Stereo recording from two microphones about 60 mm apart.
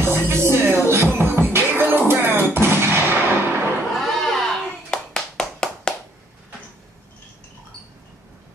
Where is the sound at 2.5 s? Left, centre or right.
Right.